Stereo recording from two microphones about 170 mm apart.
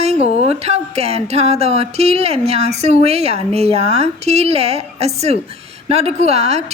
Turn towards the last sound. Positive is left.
turn(degrees=-40)  # may be behind; listen again after turning